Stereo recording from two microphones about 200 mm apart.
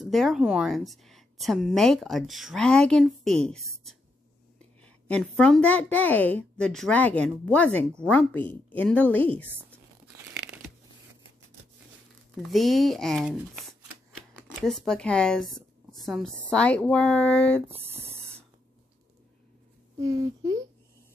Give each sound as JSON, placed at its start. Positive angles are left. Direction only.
{"t": 0.0, "sound": "a woman's voice", "side_deg": 0}
{"t": 12.4, "sound": "a woman's voice", "side_deg": 0}
{"t": 17.6, "sound": "a sound", "side_deg": -10}
{"t": 20.0, "sound": "speech", "side_deg": -20}